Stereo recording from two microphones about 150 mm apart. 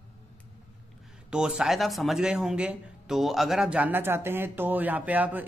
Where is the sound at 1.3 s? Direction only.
5° right (ahead or behind).